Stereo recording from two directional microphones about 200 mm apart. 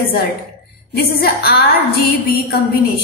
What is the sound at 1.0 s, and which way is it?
A woman's voice, 55° left (ahead or behind).